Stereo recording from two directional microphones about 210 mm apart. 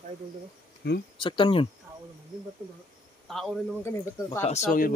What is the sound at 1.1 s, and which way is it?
Speech, 25° left (ahead or behind).